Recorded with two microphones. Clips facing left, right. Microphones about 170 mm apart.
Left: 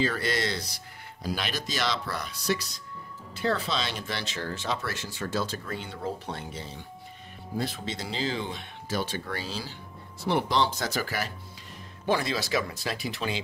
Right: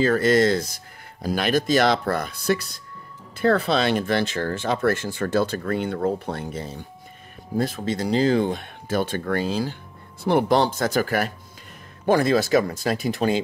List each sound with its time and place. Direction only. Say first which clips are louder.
0.0 s speech: right 10 dB; 50° right (ahead or behind)